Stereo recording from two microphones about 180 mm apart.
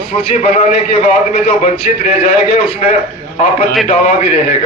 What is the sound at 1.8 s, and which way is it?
Speech, 40° left (ahead or behind).